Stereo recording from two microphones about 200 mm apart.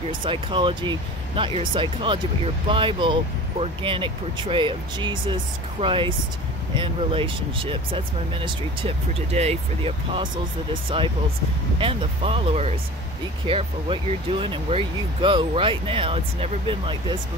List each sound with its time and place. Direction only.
0.2 s speech: 25° right (ahead or behind)